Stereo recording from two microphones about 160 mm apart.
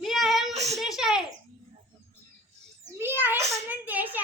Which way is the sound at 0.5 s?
45° right (ahead or behind).